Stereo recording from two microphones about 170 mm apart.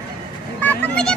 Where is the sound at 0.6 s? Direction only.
10° left (ahead or behind).